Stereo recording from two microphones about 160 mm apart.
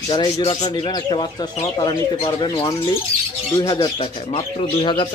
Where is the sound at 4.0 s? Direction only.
40° left (ahead or behind).